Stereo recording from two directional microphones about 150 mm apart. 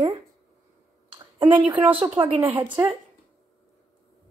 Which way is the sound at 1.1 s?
35° right (ahead or behind).